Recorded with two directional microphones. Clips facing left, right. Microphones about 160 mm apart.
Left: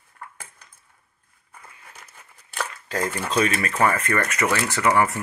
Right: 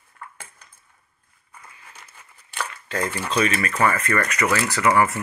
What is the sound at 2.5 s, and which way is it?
Speech, 40° left (ahead or behind).